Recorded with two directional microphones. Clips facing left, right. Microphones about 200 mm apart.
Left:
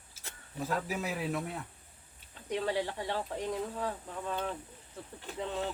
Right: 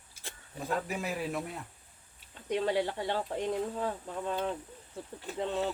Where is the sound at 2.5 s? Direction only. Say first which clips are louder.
Right 3 dB; 25° right (ahead or behind).